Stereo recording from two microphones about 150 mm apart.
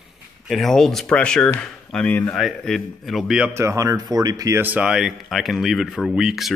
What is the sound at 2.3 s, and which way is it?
Speech, centre (ahead or behind).